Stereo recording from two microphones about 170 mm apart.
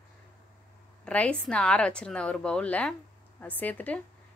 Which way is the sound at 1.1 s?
5° left (ahead or behind).